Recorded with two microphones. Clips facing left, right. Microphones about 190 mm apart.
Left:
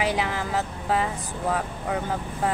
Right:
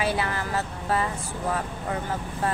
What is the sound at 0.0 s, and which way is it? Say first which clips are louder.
Vehicle: left 1 dB; 15° left (ahead or behind).